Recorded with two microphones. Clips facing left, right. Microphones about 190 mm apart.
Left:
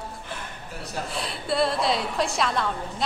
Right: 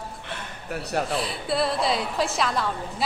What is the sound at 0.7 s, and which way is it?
Speech, 70° right (ahead or behind).